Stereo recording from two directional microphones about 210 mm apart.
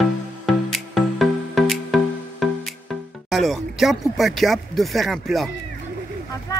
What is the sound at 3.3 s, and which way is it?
Speech, centre (ahead or behind).